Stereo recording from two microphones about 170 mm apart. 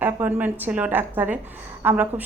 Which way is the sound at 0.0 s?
10° right (ahead or behind).